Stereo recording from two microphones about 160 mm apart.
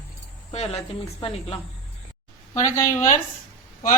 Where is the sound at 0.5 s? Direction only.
40° left (ahead or behind).